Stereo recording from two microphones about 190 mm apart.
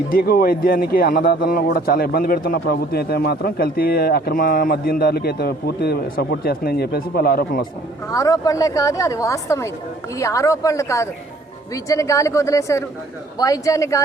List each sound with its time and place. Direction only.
0.1 s a man's voice: 50° left (ahead or behind)
8.1 s speech: 20° left (ahead or behind)